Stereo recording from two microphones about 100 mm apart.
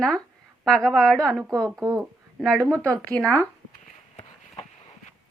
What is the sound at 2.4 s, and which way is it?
Speech, 5° left (ahead or behind).